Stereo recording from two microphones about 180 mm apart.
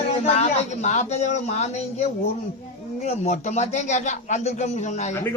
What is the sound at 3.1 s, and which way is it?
A man's voice, 40° left (ahead or behind).